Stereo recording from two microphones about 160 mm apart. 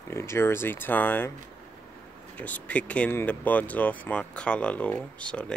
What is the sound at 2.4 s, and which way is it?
Speech, 10° left (ahead or behind).